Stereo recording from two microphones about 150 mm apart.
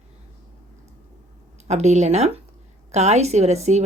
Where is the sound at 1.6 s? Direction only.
50° right (ahead or behind).